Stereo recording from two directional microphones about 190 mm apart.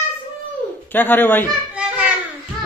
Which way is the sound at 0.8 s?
10° left (ahead or behind).